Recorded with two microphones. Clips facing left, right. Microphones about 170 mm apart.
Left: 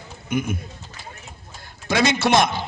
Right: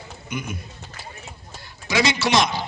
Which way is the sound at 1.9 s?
55° left (ahead or behind).